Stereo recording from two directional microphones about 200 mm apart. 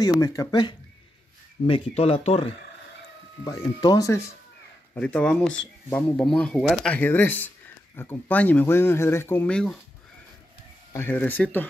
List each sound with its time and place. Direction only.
0.0 s speech: 20° left (ahead or behind)
3.4 s speech: 20° left (ahead or behind)
10.9 s speech: 10° left (ahead or behind)